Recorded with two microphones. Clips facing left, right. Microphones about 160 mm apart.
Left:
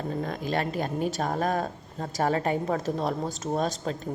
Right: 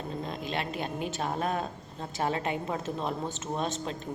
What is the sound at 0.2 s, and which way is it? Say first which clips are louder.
Speech: left 5 dB; 45° left (ahead or behind).